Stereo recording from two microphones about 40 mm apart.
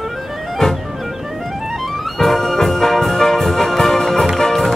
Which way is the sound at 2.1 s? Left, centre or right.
Centre.